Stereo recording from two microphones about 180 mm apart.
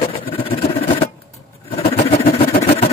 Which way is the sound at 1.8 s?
35° left (ahead or behind).